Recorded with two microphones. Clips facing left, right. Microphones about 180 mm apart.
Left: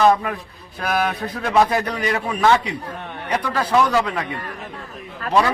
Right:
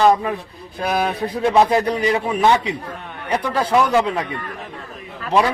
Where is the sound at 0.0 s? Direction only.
25° right (ahead or behind).